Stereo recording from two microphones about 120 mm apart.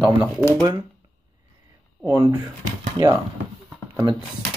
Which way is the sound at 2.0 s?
30° right (ahead or behind).